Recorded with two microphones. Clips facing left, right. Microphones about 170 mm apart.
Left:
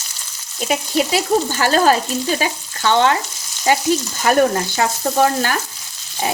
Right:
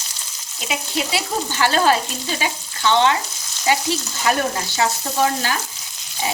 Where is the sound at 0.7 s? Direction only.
45° left (ahead or behind).